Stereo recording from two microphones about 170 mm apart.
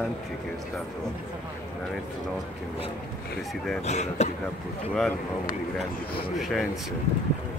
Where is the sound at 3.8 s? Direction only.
40° left (ahead or behind).